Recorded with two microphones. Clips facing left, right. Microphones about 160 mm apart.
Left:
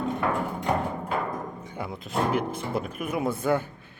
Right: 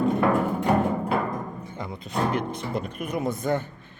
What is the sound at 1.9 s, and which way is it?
Speech, centre (ahead or behind).